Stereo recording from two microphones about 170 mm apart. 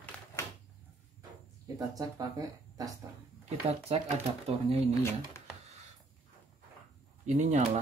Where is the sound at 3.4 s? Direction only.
40° right (ahead or behind).